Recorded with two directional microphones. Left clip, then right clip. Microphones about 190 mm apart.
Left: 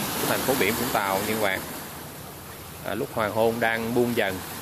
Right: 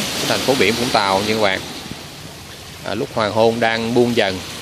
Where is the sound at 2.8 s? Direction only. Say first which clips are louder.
Right 7 dB; 25° right (ahead or behind).